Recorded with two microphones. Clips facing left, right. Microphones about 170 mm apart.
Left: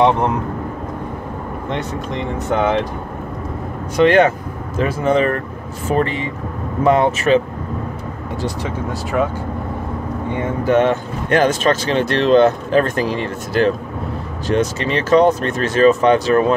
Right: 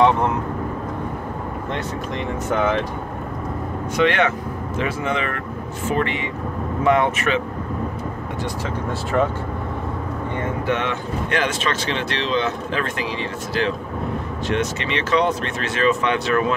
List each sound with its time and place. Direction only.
3.9 s speech: 40° left (ahead or behind)
8.6 s speech: 5° left (ahead or behind)
10.6 s speech: 40° left (ahead or behind)